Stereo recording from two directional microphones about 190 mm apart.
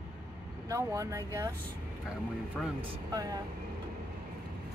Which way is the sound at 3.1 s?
20° right (ahead or behind).